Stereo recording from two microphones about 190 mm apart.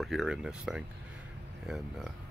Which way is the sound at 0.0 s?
Centre (ahead or behind).